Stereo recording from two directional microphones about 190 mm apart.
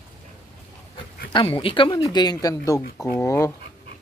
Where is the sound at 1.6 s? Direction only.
25° left (ahead or behind).